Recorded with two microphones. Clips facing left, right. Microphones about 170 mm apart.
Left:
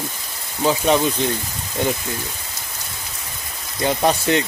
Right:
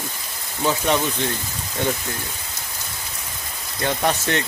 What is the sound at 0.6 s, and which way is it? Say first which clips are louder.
Speech: left 3 dB; 15° left (ahead or behind).